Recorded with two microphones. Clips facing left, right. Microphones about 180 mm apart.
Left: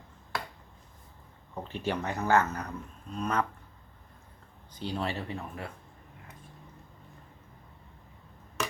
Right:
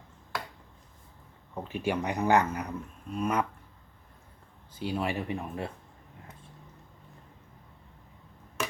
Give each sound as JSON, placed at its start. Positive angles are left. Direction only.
{"t": 1.5, "sound": "speech", "side_deg": -10}
{"t": 4.7, "sound": "speech", "side_deg": -10}